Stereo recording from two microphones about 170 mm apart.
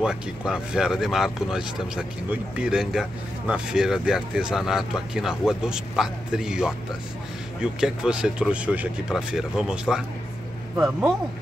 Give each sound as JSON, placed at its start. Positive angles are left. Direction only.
{"t": 0.0, "sound": "speech", "side_deg": -5}
{"t": 7.8, "sound": "speech", "side_deg": -5}